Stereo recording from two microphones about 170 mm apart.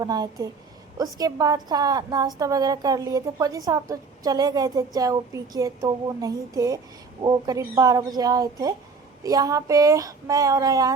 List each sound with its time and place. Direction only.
0.0 s a woman's voice: 20° right (ahead or behind)